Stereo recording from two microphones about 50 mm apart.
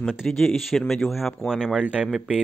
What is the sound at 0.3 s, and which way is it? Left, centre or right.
Speech, centre.